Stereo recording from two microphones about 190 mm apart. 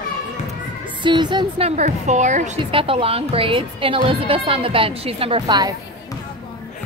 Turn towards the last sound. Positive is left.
turn(degrees=-20)  # may be behind; listen again after turning